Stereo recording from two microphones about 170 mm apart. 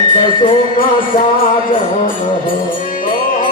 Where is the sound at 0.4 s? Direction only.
30° left (ahead or behind).